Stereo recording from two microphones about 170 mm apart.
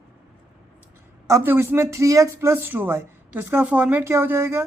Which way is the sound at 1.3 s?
15° right (ahead or behind).